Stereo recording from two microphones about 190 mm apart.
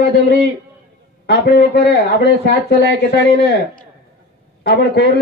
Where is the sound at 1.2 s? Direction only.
55° left (ahead or behind).